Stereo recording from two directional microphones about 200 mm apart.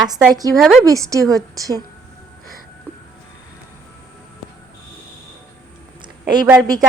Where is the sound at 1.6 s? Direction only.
20° right (ahead or behind).